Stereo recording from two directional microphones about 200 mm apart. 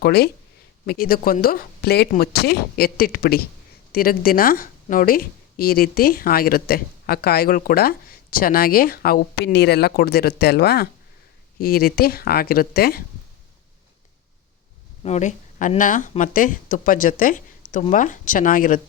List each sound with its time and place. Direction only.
0.0 s a woman's voice: 50° left (ahead or behind)
15.0 s speech: 35° left (ahead or behind)